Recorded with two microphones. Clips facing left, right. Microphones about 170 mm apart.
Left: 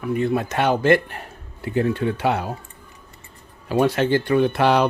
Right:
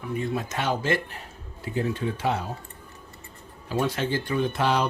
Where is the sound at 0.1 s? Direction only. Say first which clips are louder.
Left 7 dB; 65° left (ahead or behind).